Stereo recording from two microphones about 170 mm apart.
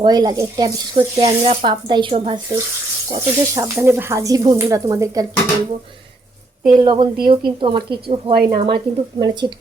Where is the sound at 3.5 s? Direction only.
15° right (ahead or behind).